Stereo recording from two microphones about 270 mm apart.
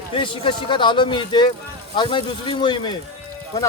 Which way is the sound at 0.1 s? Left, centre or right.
Centre.